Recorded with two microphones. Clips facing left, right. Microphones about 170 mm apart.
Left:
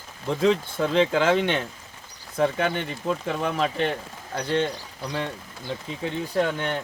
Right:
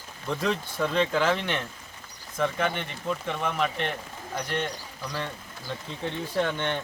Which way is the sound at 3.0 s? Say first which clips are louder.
Left 3 dB; 35° left (ahead or behind).